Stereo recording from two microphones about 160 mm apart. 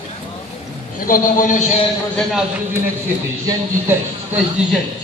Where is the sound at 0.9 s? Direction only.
60° left (ahead or behind).